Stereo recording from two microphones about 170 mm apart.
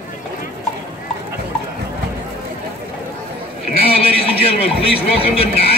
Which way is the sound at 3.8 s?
35° left (ahead or behind).